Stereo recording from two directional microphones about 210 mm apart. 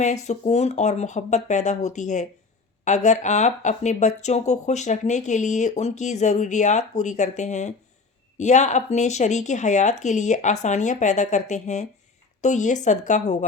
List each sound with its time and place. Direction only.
0.0 s speech: 35° left (ahead or behind)